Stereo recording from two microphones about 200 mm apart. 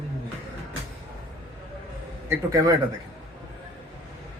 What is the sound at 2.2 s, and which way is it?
Speech, 15° right (ahead or behind).